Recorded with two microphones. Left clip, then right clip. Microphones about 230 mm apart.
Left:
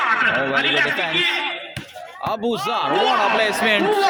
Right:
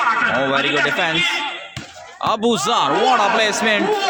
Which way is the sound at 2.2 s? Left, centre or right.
Right.